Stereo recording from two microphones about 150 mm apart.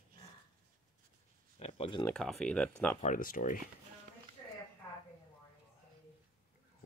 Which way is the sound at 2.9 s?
60° left (ahead or behind).